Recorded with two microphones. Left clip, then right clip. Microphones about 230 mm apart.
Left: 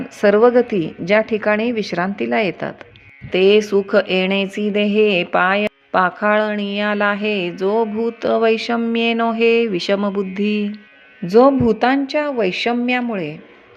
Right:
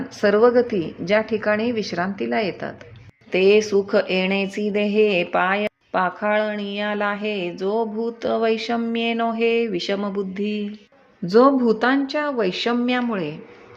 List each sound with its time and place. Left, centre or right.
0.2 s speech: centre